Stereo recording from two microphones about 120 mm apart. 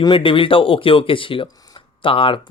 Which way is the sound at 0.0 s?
45° left (ahead or behind).